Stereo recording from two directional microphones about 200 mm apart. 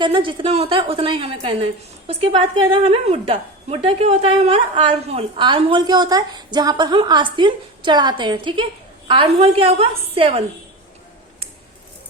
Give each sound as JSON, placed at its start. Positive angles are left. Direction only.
{"t": 0.0, "sound": "a woman's voice", "side_deg": -25}